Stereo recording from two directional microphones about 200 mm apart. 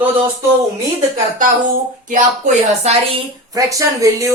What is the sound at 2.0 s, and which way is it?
Speech, 40° right (ahead or behind).